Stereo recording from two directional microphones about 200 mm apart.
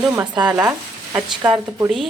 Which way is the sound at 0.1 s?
15° right (ahead or behind).